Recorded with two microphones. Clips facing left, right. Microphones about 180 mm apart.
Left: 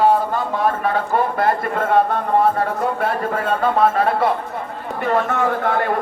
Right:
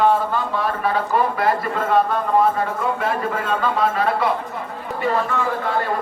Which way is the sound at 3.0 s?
55° left (ahead or behind).